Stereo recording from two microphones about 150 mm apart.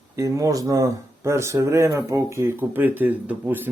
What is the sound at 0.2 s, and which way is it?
Speech, 20° right (ahead or behind).